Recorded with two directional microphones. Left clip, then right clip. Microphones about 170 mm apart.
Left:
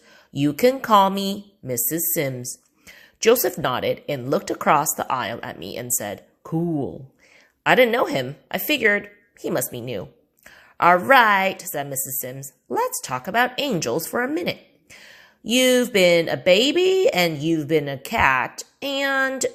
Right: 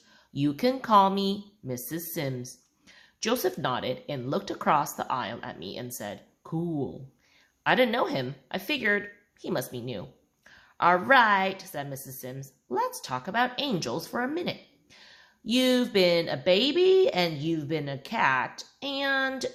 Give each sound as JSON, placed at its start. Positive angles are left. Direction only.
{"t": 0.3, "sound": "a woman's voice", "side_deg": 35}